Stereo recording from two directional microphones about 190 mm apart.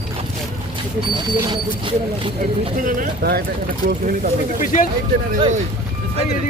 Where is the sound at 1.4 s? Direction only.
25° right (ahead or behind).